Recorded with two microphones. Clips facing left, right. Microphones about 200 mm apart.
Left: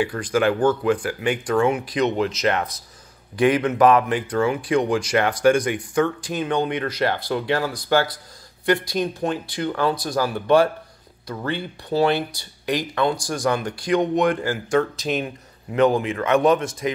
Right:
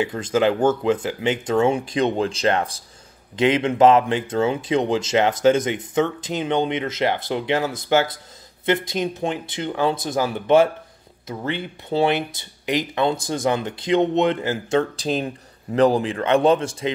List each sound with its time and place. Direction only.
0.0 s speech: 20° right (ahead or behind)